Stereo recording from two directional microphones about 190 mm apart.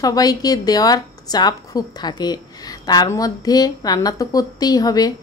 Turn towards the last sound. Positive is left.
turn(degrees=20)  # may be behind; listen again after turning